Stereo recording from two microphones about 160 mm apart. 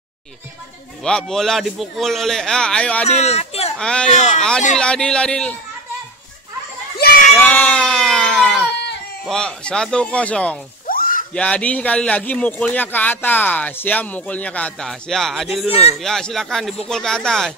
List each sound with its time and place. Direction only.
1.0 s a man's voice: 5° left (ahead or behind)
3.1 s speech: 40° left (ahead or behind)
3.7 s a man's voice: 5° left (ahead or behind)
7.0 s a sound: 75° left (ahead or behind)
7.3 s a sound: 10° left (ahead or behind)
9.2 s speech: 5° left (ahead or behind)
10.9 s a sound: 60° left (ahead or behind)
11.3 s speech: 10° left (ahead or behind)
15.7 s speech: 40° left (ahead or behind)
16.0 s a man's voice: 5° left (ahead or behind)